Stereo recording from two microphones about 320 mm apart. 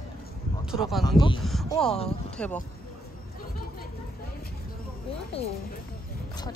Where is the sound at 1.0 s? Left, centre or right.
Centre.